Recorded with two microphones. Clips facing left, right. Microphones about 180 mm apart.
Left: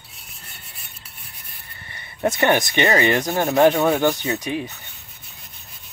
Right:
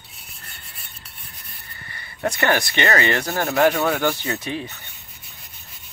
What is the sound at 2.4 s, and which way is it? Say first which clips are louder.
Speech: left 2 dB; 20° left (ahead or behind).